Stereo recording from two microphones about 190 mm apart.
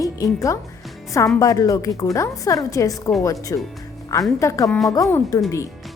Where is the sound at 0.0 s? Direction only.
20° left (ahead or behind).